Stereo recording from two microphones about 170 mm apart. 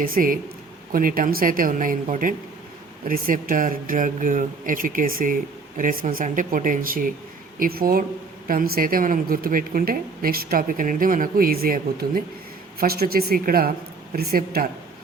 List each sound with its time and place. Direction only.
0.0 s a woman's voice: 55° right (ahead or behind)